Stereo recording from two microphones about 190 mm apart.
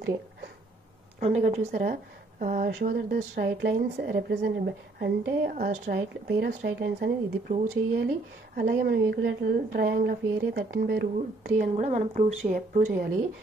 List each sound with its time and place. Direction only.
1.2 s speech: 35° right (ahead or behind)
1.7 s a woman's voice: 50° right (ahead or behind)
11.1 s speech: 45° right (ahead or behind)